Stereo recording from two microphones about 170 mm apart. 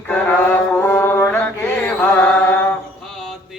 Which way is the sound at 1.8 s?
10° left (ahead or behind).